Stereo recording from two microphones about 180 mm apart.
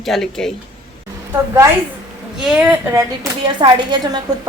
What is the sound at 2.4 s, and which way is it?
Speech, 5° right (ahead or behind).